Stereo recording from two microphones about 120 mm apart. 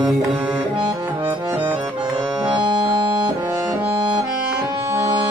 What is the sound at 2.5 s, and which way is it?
Music, 40° right (ahead or behind).